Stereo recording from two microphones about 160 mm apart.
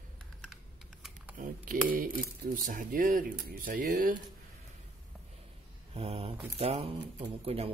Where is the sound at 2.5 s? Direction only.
55° right (ahead or behind).